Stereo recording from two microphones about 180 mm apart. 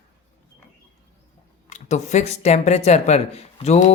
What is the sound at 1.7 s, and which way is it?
Speech, 40° left (ahead or behind).